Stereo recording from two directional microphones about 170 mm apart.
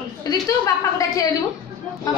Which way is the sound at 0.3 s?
25° left (ahead or behind).